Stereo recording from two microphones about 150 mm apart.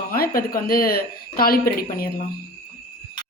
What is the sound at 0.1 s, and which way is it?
Speech, 75° left (ahead or behind).